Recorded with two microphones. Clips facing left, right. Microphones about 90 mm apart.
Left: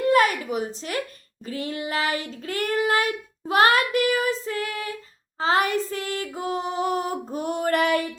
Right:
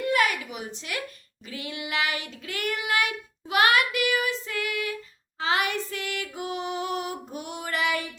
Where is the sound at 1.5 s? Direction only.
40° left (ahead or behind).